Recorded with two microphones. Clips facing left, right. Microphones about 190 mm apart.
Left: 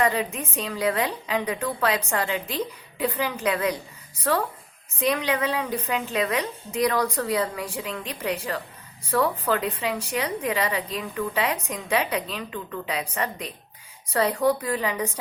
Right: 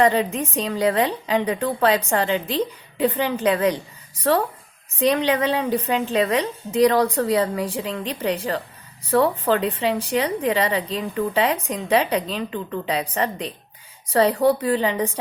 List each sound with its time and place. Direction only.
0.0 s a woman's voice: 30° right (ahead or behind)
4.9 s a woman's voice: 30° right (ahead or behind)